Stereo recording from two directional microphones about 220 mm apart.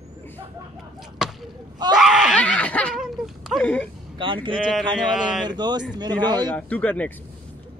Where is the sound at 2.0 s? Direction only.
Centre (ahead or behind).